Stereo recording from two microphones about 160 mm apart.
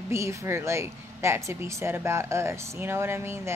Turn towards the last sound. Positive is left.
turn(degrees=-15)  # may be behind; listen again after turning